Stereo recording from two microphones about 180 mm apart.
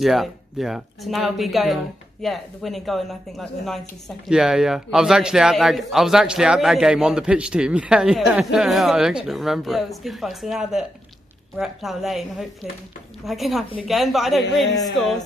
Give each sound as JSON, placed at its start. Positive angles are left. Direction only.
{"t": 0.0, "sound": "a man's voice", "side_deg": 0}